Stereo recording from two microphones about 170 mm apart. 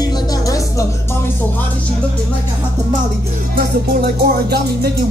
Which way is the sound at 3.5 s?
65° right (ahead or behind).